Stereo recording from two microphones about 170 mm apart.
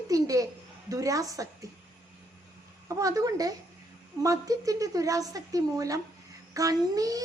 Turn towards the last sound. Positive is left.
turn(degrees=-20)  # may be behind; listen again after turning